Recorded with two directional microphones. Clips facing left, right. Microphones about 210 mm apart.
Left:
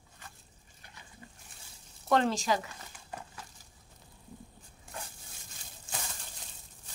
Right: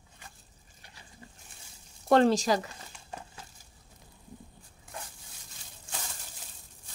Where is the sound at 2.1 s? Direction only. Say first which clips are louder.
Right 5 dB; 35° right (ahead or behind).